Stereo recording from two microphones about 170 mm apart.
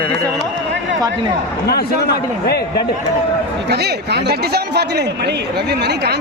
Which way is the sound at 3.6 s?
70° right (ahead or behind).